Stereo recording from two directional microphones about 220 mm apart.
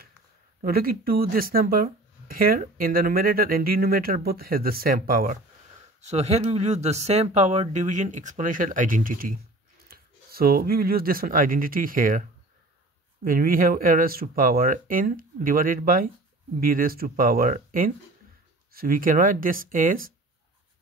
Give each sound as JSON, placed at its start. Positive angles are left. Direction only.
{"t": 0.6, "sound": "speech", "side_deg": -40}